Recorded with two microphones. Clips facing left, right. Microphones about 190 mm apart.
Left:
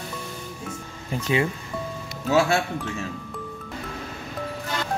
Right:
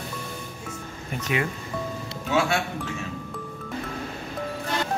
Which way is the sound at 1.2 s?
30° left (ahead or behind).